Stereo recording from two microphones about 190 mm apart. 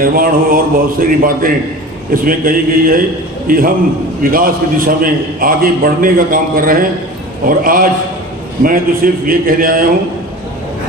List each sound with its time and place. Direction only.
0.0 s a man's voice: 50° right (ahead or behind)